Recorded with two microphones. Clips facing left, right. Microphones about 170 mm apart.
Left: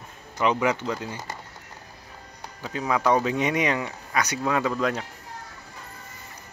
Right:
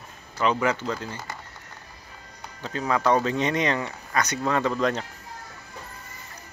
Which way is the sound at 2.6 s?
10° left (ahead or behind).